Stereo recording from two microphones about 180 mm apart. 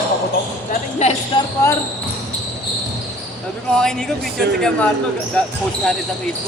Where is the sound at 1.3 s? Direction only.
25° left (ahead or behind).